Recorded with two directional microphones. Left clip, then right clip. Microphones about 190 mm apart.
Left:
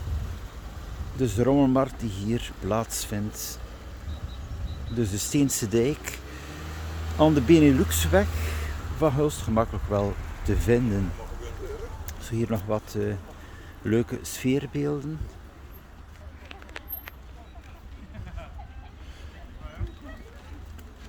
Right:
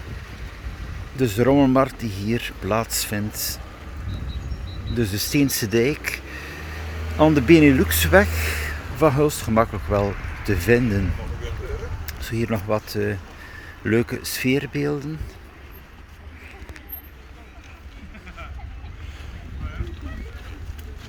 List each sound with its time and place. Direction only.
1.1 s speech: 5° left (ahead or behind)
4.9 s speech: 10° left (ahead or behind)
8.1 s speech: 5° right (ahead or behind)
12.0 s speech: 10° left (ahead or behind)